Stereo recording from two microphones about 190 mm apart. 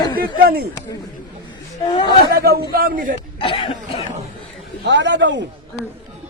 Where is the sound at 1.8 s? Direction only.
25° left (ahead or behind).